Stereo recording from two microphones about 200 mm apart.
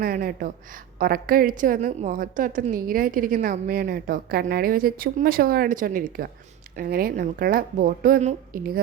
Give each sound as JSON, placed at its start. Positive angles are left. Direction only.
{"t": 0.0, "sound": "a woman's voice", "side_deg": -45}